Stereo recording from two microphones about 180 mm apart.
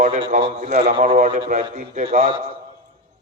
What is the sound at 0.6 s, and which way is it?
Speech, 40° right (ahead or behind).